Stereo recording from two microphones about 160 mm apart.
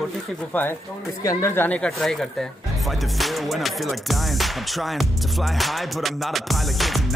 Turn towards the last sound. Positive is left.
turn(degrees=0)  # may be behind; listen again after turning